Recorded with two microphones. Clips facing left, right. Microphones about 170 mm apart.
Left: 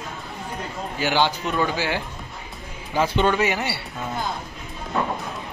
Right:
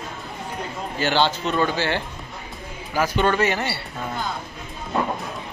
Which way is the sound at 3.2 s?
15° left (ahead or behind).